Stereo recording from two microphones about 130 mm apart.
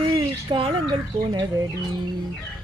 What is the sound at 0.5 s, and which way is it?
Speech, 40° right (ahead or behind).